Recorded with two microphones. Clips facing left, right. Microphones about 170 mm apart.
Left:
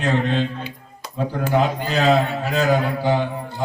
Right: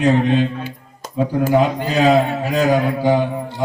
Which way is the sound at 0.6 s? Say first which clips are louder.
Right 3 dB; 45° right (ahead or behind).